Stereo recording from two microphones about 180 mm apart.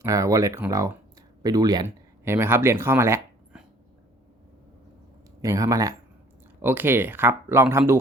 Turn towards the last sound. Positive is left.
turn(degrees=-15)  # may be behind; listen again after turning